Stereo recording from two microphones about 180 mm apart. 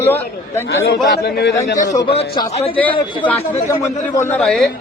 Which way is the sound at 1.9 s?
20° left (ahead or behind).